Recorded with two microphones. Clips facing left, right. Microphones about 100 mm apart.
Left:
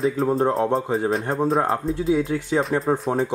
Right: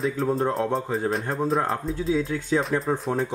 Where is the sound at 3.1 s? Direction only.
15° left (ahead or behind).